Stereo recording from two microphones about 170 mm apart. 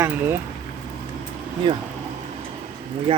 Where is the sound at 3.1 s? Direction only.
30° right (ahead or behind).